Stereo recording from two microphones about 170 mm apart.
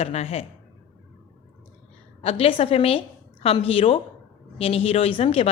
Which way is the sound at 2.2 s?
35° left (ahead or behind).